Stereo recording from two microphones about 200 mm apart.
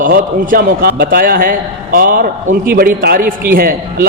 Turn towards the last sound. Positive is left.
turn(degrees=-45)  # may be behind; listen again after turning